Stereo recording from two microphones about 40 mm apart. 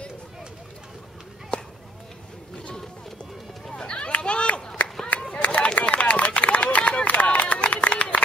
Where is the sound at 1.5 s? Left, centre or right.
Left.